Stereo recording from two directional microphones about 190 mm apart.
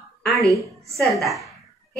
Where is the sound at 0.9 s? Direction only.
Centre (ahead or behind).